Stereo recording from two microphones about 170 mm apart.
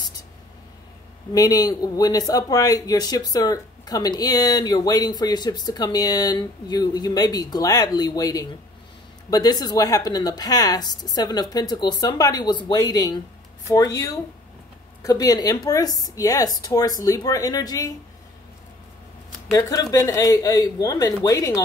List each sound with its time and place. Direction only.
1.3 s a man's voice: 20° left (ahead or behind)
19.5 s a man's voice: 20° left (ahead or behind)